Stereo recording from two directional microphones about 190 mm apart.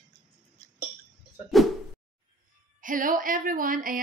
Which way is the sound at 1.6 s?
Centre (ahead or behind).